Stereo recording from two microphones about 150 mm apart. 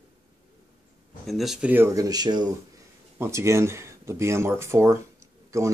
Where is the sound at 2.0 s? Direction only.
25° right (ahead or behind).